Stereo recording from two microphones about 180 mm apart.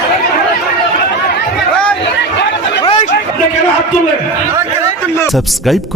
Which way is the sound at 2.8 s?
35° left (ahead or behind).